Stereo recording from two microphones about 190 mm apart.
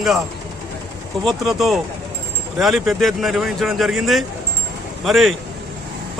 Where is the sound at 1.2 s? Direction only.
Centre (ahead or behind).